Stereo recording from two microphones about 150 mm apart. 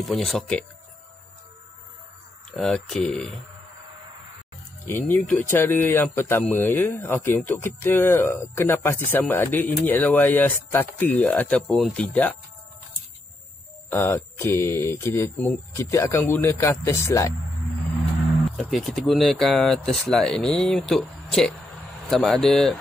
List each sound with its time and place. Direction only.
0.0 s speech: centre (ahead or behind)
2.5 s speech: 5° left (ahead or behind)
4.8 s speech: 15° left (ahead or behind)
13.8 s speech: 15° left (ahead or behind)
18.6 s speech: centre (ahead or behind)